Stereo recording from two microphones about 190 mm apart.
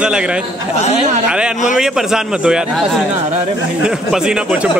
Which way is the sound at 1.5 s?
40° left (ahead or behind).